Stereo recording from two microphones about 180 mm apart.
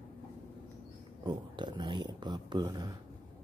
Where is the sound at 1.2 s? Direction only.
25° right (ahead or behind).